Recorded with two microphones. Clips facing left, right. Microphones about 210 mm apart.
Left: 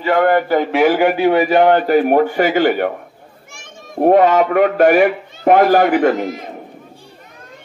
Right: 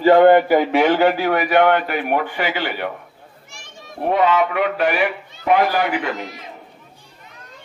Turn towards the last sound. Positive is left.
turn(degrees=50)  # may be behind; listen again after turning